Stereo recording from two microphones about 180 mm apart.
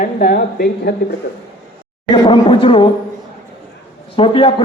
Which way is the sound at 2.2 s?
30° left (ahead or behind).